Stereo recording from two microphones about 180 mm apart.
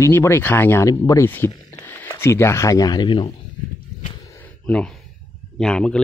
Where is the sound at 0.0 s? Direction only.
15° left (ahead or behind).